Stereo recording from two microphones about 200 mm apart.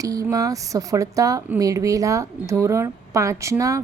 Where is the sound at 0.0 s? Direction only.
15° right (ahead or behind).